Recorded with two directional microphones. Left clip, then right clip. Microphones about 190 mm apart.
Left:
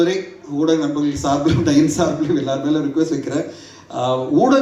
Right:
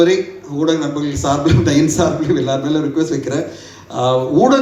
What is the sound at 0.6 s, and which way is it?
A man's voice, 25° right (ahead or behind).